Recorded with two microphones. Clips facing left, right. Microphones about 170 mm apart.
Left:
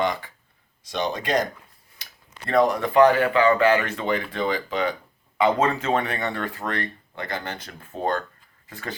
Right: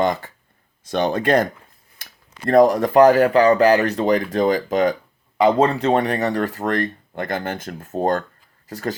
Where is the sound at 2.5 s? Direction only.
45° right (ahead or behind).